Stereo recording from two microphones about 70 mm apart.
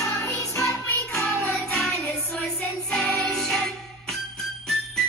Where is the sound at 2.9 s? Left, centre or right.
Centre.